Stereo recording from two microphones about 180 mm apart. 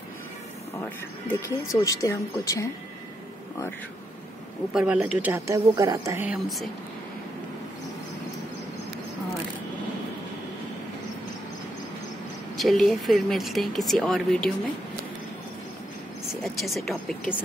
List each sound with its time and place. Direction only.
0.8 s speech: 10° left (ahead or behind)
4.7 s speech: 5° right (ahead or behind)
6.2 s speech: centre (ahead or behind)
12.5 s speech: centre (ahead or behind)
16.8 s speech: centre (ahead or behind)